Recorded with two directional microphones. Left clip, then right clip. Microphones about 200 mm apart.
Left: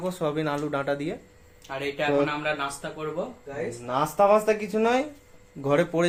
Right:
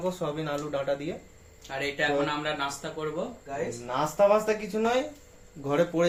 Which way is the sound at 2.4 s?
20° left (ahead or behind).